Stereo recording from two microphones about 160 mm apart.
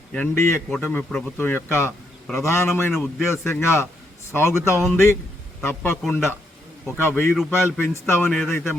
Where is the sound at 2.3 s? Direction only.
Centre (ahead or behind).